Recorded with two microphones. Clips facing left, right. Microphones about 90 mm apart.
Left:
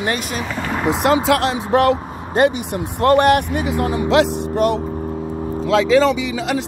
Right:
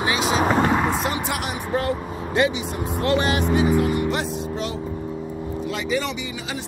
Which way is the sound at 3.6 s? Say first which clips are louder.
Even; 80° left.